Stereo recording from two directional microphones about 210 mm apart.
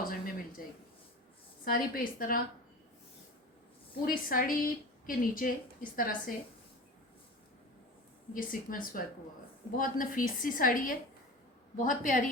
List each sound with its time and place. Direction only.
0.0 s a sound: 45° left (ahead or behind)
1.6 s a woman's voice: 45° left (ahead or behind)
4.0 s a woman's voice: 40° left (ahead or behind)
8.3 s a woman's voice: 40° left (ahead or behind)